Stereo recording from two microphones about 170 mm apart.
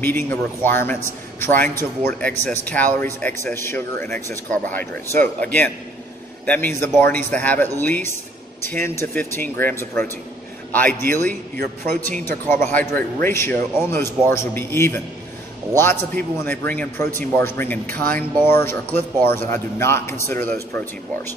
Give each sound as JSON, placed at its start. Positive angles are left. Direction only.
{"t": 0.0, "sound": "a man's voice", "side_deg": 10}
{"t": 11.5, "sound": "speech", "side_deg": -55}
{"t": 12.3, "sound": "a man's voice", "side_deg": 15}